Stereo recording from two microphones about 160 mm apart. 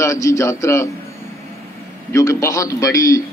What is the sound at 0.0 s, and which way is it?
Speech, 20° left (ahead or behind).